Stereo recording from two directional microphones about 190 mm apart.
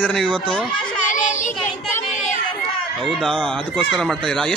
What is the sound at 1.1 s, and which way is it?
Child singing, 40° left (ahead or behind).